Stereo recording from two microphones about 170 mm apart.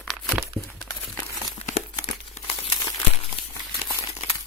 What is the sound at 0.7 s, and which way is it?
Crumpling, 15° left (ahead or behind).